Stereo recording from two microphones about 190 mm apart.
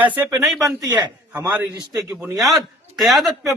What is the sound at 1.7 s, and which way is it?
Speech, 20° right (ahead or behind).